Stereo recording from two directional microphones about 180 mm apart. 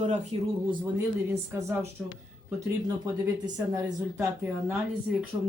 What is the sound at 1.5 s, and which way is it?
Speech, 15° right (ahead or behind).